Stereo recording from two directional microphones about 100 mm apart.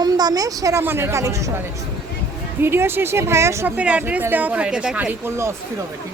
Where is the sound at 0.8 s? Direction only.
25° right (ahead or behind).